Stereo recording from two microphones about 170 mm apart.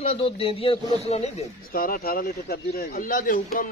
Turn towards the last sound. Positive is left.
turn(degrees=55)  # may be behind; listen again after turning